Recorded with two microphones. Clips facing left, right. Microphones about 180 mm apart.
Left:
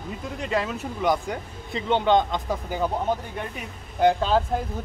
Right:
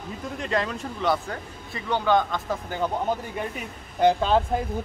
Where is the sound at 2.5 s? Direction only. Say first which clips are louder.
Even; 10° left (ahead or behind).